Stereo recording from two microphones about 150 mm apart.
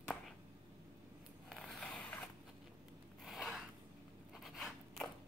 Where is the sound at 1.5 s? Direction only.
Centre (ahead or behind).